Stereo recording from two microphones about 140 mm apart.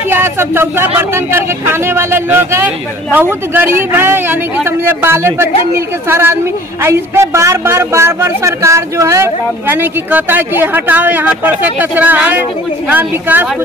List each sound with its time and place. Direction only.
0.1 s a woman's voice: 15° right (ahead or behind)